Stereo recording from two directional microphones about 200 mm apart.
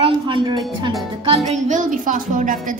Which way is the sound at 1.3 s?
35° right (ahead or behind).